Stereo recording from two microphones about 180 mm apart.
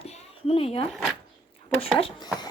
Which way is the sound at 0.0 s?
35° left (ahead or behind).